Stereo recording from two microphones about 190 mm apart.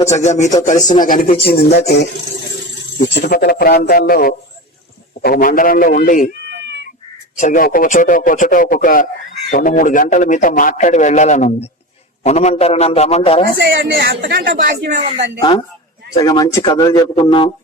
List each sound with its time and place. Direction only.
0.0 s a man's voice: 35° left (ahead or behind)
1.5 s a man's voice: 60° left (ahead or behind)
7.3 s a man's voice: 40° left (ahead or behind)
13.6 s speech: 50° right (ahead or behind)
15.4 s speech: 25° left (ahead or behind)